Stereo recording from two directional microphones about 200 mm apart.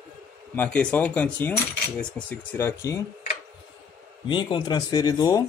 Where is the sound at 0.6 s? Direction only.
10° left (ahead or behind).